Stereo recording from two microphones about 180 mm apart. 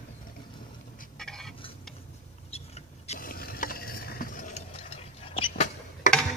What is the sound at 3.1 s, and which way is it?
Stir, 55° left (ahead or behind).